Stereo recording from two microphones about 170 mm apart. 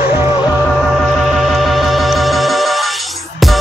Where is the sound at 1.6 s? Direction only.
Centre (ahead or behind).